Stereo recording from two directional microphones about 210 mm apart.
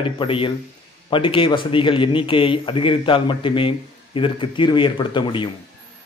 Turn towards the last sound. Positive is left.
turn(degrees=25)  # may be behind; listen again after turning